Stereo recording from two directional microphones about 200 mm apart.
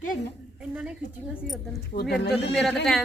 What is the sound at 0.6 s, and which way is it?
A woman's voice, 5° right (ahead or behind).